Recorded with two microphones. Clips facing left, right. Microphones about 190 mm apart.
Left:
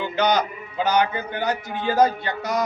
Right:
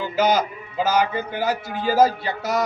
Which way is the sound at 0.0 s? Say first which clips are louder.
Right 1 dB; 5° right (ahead or behind).